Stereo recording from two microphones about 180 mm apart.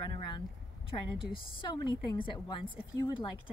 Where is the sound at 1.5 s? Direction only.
25° left (ahead or behind).